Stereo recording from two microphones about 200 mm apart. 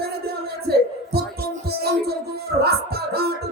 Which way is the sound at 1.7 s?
55° right (ahead or behind).